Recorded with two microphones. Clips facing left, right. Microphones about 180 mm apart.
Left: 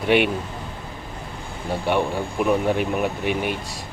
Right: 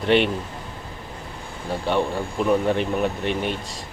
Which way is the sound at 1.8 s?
10° left (ahead or behind).